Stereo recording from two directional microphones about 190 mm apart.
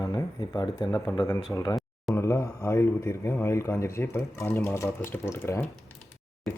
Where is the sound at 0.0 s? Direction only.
20° left (ahead or behind).